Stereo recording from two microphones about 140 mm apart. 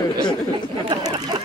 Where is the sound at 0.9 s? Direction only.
30° right (ahead or behind).